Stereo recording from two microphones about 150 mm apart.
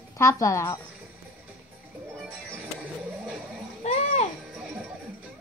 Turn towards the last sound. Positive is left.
turn(degrees=45)  # may be behind; listen again after turning